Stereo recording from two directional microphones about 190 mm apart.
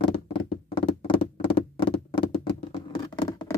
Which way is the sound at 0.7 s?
30° left (ahead or behind).